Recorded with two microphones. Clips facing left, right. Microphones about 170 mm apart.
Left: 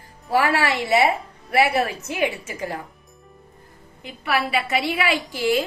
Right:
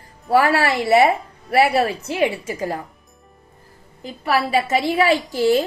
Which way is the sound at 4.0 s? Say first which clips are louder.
Right 3 dB; 35° right (ahead or behind).